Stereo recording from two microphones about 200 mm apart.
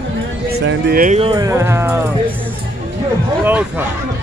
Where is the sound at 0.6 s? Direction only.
45° right (ahead or behind).